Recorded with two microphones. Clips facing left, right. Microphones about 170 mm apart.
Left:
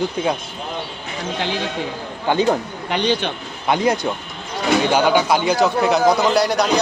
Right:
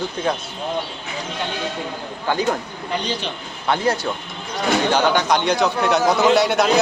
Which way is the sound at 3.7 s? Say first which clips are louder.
Left 2 dB; 15° left (ahead or behind).